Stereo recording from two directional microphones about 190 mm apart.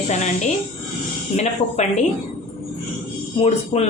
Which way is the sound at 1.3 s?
35° left (ahead or behind).